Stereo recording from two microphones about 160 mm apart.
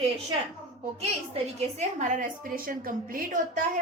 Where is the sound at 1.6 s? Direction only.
45° right (ahead or behind).